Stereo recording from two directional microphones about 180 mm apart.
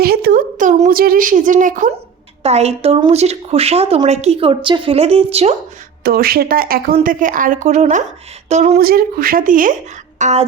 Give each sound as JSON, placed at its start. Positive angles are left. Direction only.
{"t": 0.0, "sound": "a woman's voice", "side_deg": -60}
{"t": 6.0, "sound": "a woman's voice", "side_deg": -55}
{"t": 8.8, "sound": "a woman's voice", "side_deg": -55}